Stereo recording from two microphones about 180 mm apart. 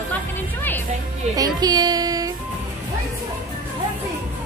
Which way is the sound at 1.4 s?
20° right (ahead or behind).